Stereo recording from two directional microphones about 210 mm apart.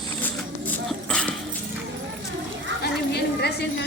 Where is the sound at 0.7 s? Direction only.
5° left (ahead or behind).